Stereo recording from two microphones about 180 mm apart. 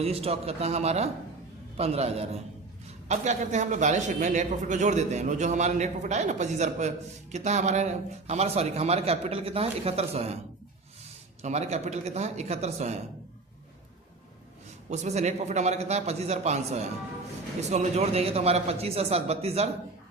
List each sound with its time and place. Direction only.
0.0 s a man's voice: 35° right (ahead or behind)
11.4 s a man's voice: 40° right (ahead or behind)
14.8 s a man's voice: 40° right (ahead or behind)